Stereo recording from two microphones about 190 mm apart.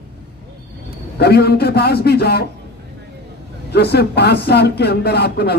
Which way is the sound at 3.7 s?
60° left (ahead or behind).